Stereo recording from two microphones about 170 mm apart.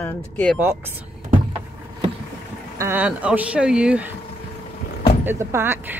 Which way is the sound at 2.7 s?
15° right (ahead or behind).